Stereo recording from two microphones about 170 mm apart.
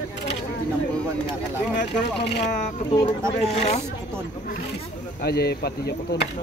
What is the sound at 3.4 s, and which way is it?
Speech, 40° left (ahead or behind).